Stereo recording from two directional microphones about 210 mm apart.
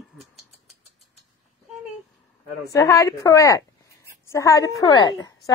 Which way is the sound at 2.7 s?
15° left (ahead or behind).